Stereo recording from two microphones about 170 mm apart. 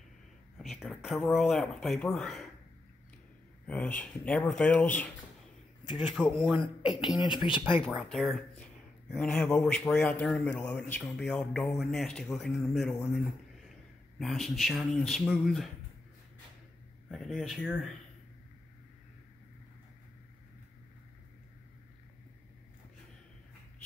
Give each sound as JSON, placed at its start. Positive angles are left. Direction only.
{"t": 0.6, "sound": "a man's voice", "side_deg": 0}
{"t": 3.6, "sound": "speech", "side_deg": 5}
{"t": 6.1, "sound": "a man's voice", "side_deg": 0}
{"t": 7.2, "sound": "speech", "side_deg": 30}
{"t": 8.1, "sound": "a man's voice", "side_deg": 0}
{"t": 17.1, "sound": "a man's voice", "side_deg": 0}